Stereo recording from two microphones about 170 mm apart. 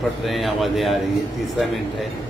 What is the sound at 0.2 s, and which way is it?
Speech, centre (ahead or behind).